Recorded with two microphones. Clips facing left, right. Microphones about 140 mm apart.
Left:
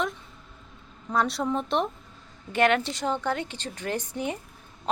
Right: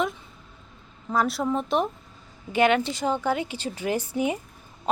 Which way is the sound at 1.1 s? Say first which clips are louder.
Right 1 dB; centre (ahead or behind).